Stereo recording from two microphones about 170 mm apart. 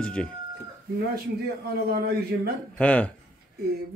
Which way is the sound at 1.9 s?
70° right (ahead or behind).